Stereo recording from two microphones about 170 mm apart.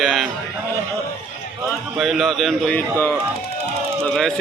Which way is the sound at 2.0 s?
Centre (ahead or behind).